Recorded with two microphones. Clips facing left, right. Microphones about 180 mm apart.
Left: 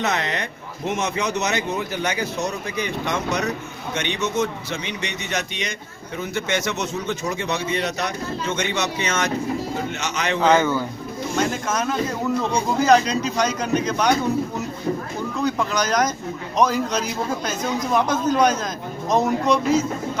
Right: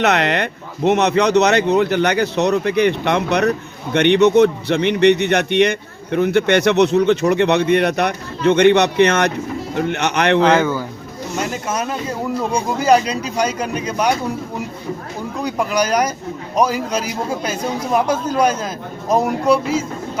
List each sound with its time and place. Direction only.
0.0 s speech: 70° right (ahead or behind)
10.5 s a man's voice: 10° right (ahead or behind)
15.4 s a man's voice: 10° right (ahead or behind)